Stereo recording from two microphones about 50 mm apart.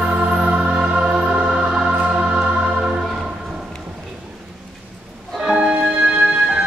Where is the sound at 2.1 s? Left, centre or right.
Right.